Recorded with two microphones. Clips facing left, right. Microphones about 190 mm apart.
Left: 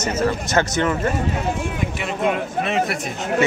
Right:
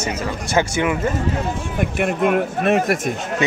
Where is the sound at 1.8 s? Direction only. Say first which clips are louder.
Right 5 dB; 55° right (ahead or behind).